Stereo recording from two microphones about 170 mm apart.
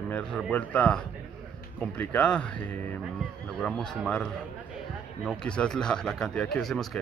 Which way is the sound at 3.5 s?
5° left (ahead or behind).